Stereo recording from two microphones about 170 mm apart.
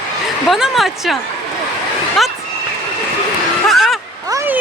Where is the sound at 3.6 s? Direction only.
Centre (ahead or behind).